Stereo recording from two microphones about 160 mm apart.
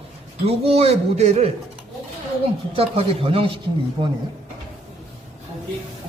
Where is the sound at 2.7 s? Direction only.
35° right (ahead or behind).